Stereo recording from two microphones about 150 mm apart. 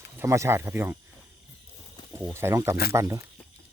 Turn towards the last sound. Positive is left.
turn(degrees=-20)  # may be behind; listen again after turning